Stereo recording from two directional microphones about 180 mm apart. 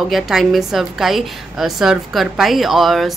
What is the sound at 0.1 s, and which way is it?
A woman's voice, centre (ahead or behind).